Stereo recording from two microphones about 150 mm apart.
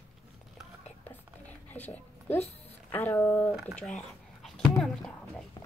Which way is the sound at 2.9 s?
15° left (ahead or behind).